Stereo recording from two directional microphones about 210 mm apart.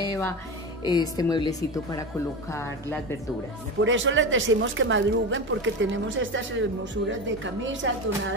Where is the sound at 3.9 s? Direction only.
65° right (ahead or behind).